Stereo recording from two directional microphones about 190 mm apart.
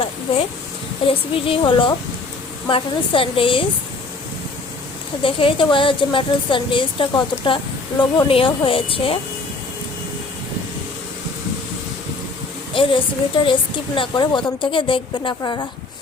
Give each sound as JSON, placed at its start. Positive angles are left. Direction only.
{"t": 1.0, "sound": "a woman's voice", "side_deg": 30}
{"t": 5.2, "sound": "a woman's voice", "side_deg": 25}
{"t": 12.7, "sound": "a woman's voice", "side_deg": 25}